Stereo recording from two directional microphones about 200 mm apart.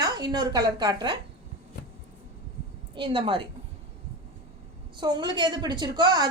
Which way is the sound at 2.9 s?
25° right (ahead or behind).